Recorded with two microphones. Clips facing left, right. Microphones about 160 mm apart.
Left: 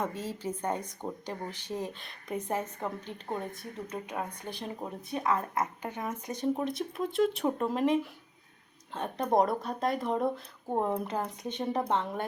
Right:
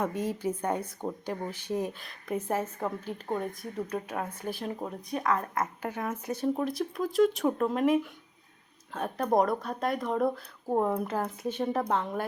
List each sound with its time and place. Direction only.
0.0 s speech: 15° right (ahead or behind)
2.0 s a woman's voice: centre (ahead or behind)
5.2 s a woman's voice: 20° left (ahead or behind)
5.5 s a woman's voice: 5° right (ahead or behind)
9.0 s a woman's voice: centre (ahead or behind)